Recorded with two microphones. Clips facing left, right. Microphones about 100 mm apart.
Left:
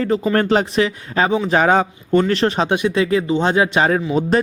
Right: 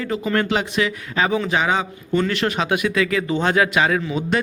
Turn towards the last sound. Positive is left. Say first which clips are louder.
# left 5 dB
turn(degrees=35)  # may be behind; listen again after turning